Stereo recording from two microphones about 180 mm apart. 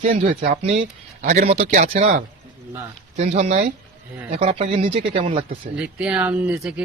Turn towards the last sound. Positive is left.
turn(degrees=-5)  # may be behind; listen again after turning